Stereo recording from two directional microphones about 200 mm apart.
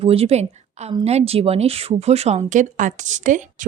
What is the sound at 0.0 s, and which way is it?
A woman's voice, 30° right (ahead or behind).